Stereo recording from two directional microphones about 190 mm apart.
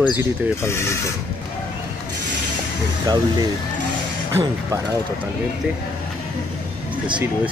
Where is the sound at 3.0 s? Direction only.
20° right (ahead or behind).